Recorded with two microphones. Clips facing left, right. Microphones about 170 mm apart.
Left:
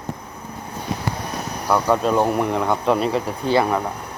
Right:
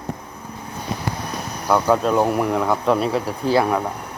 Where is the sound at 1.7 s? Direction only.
Centre (ahead or behind).